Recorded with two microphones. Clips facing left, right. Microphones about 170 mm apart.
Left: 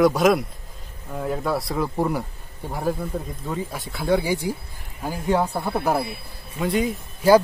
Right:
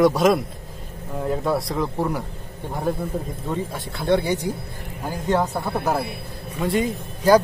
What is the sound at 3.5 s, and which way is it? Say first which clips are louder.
Speech: right 2 dB; centre (ahead or behind).